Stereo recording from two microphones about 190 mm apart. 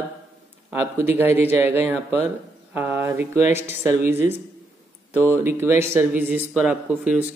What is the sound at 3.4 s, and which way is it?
Speech, 35° left (ahead or behind).